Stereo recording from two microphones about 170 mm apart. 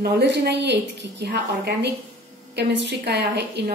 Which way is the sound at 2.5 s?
85° right.